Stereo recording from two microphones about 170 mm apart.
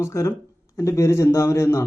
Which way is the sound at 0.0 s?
15° left (ahead or behind).